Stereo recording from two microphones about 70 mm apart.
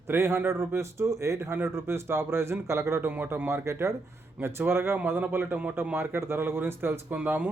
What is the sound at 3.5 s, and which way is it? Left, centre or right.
A man's voice, right.